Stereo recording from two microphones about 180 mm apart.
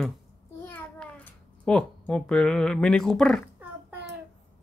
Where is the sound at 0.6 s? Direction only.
10° left (ahead or behind).